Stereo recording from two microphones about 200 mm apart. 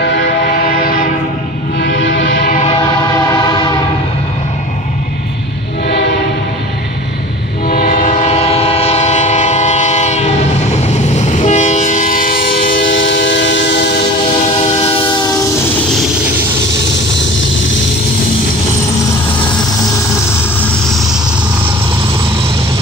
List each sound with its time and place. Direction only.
0.0 s music: 65° left (ahead or behind)
0.5 s train: 45° left (ahead or behind)
1.8 s music: 70° left (ahead or behind)
2.4 s music: 35° left (ahead or behind)
3.3 s train: 20° left (ahead or behind)
7.6 s train: 45° left (ahead or behind)
12.8 s train: 65° left (ahead or behind)
14.6 s train: 30° left (ahead or behind)